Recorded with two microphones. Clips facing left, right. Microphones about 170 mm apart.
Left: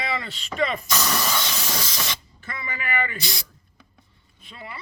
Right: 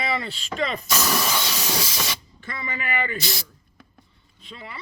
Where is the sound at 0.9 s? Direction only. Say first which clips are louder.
Right 1 dB; 5° right (ahead or behind).